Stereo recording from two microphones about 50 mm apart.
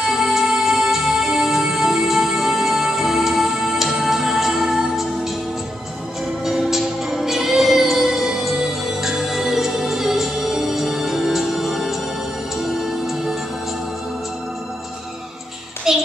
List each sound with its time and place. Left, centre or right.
0.0 s music: centre
6.4 s music: centre
15.9 s child singing: centre